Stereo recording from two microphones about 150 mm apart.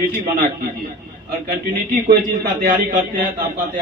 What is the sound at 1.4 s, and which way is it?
A man's voice, 75° right (ahead or behind).